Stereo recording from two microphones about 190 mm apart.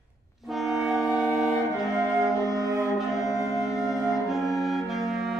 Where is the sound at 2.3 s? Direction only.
15° left (ahead or behind).